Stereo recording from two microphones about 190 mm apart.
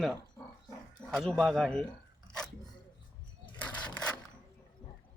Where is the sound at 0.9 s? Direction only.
Centre (ahead or behind).